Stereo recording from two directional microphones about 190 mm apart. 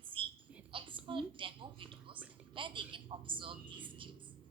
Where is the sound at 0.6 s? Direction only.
30° right (ahead or behind).